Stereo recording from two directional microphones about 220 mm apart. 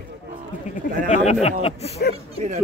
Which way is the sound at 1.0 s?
30° left (ahead or behind).